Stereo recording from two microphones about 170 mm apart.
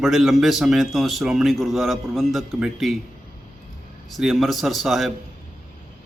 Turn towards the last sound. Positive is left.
turn(degrees=0)  # may be behind; listen again after turning